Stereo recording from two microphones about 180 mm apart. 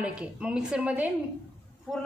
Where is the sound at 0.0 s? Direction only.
5° right (ahead or behind).